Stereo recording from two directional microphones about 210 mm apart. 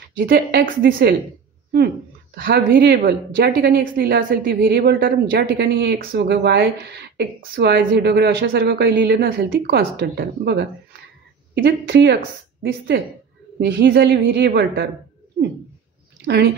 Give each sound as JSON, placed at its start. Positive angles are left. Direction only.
{"t": 0.2, "sound": "a woman's voice", "side_deg": -50}
{"t": 2.3, "sound": "a woman's voice", "side_deg": -45}
{"t": 13.6, "sound": "a woman's voice", "side_deg": -50}
{"t": 16.3, "sound": "a woman's voice", "side_deg": -55}